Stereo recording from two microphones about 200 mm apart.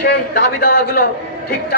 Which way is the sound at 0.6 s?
45° left (ahead or behind).